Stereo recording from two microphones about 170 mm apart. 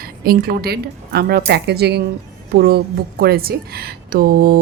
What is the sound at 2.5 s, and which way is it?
A woman's voice, 65° right (ahead or behind).